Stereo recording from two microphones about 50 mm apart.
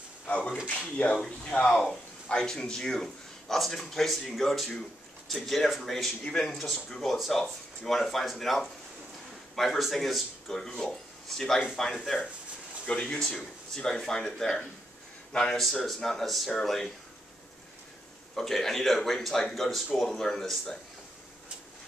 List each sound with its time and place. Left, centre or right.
0.3 s speech: left
15.6 s speech: centre
18.3 s speech: centre